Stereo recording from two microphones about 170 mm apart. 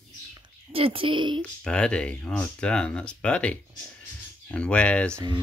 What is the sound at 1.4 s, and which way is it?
Speech, 5° left (ahead or behind).